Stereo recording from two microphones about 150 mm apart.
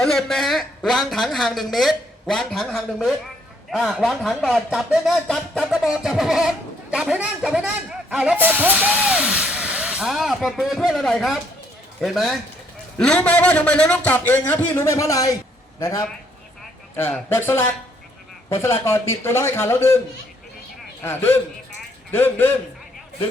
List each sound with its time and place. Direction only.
0.0 s a woman's voice: centre (ahead or behind); by 16.0 s 20° left (ahead or behind)
17.1 s a man's voice: 15° left (ahead or behind)
21.0 s a man's voice: 15° left (ahead or behind)